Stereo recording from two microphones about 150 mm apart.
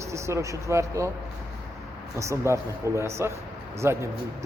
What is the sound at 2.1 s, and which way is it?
Speech, 20° right (ahead or behind).